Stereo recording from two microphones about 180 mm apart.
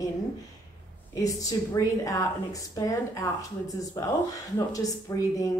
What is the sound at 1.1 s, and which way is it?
Speech, 20° left (ahead or behind).